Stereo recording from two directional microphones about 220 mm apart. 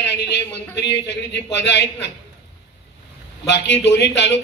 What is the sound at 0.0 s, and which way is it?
A man's voice, 50° left (ahead or behind).